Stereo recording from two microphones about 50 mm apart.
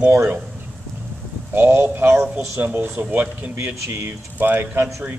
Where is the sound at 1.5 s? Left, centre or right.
Right.